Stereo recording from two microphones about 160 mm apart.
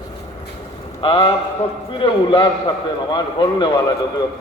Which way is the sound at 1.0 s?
35° left (ahead or behind).